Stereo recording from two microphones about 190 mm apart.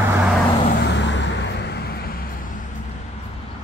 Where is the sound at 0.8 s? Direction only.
70° left (ahead or behind); by 2.6 s 50° left (ahead or behind).